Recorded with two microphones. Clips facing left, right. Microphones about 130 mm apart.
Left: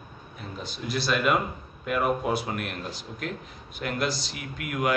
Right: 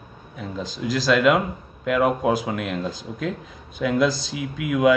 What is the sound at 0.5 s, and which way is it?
A man's voice, 90° right.